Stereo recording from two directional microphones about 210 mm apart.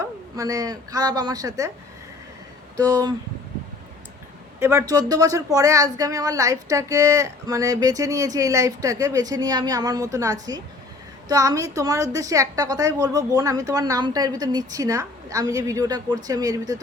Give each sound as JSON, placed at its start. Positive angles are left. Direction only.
{"t": 0.0, "sound": "speech", "side_deg": -15}
{"t": 2.8, "sound": "speech", "side_deg": -15}
{"t": 4.6, "sound": "speech", "side_deg": -10}